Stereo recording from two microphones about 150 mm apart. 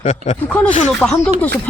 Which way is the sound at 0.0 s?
50° left (ahead or behind).